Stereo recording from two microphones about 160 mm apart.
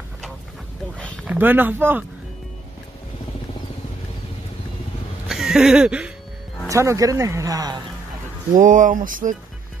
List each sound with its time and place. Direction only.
0.9 s a sound: 5° left (ahead or behind)
1.2 s speech: 10° right (ahead or behind)
5.3 s music: centre (ahead or behind)
6.7 s speech: 20° right (ahead or behind)
8.5 s speech: 55° right (ahead or behind)